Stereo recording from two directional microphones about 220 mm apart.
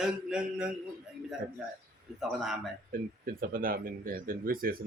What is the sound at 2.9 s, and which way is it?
Speech, 40° right (ahead or behind).